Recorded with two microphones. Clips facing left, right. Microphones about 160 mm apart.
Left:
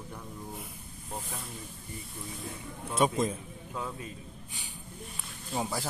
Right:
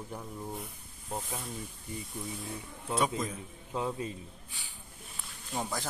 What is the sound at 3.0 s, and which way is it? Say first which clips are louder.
Speech: left 5 dB; 25° left (ahead or behind).